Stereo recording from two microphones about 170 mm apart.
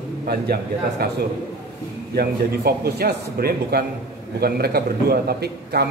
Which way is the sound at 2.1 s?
65° right (ahead or behind).